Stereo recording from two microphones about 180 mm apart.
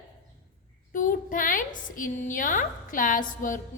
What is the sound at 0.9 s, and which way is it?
A woman's voice, 50° left (ahead or behind).